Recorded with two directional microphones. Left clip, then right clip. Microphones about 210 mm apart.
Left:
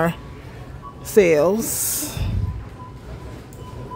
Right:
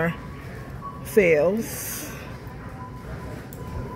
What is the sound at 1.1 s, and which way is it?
Speech, 30° left (ahead or behind).